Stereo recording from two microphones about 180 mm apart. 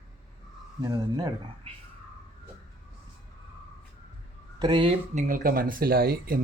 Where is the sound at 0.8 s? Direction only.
20° right (ahead or behind).